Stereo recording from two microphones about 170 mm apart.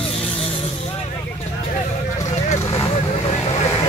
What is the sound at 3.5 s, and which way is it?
Vehicle, 25° left (ahead or behind).